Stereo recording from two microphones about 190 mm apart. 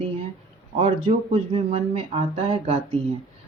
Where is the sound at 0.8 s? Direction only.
30° right (ahead or behind).